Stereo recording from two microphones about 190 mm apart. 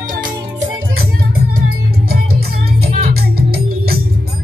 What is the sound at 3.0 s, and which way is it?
Music, 55° right (ahead or behind).